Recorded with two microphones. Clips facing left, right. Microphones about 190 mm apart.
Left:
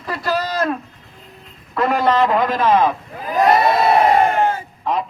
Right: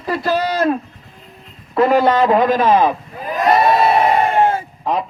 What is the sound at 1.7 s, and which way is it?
Speech, 30° right (ahead or behind).